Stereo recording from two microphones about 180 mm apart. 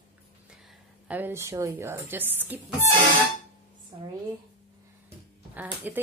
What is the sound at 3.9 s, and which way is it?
Speech, 25° right (ahead or behind).